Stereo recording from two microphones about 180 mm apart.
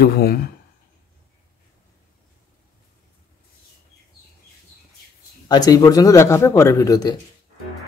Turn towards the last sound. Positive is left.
turn(degrees=20)  # may be behind; listen again after turning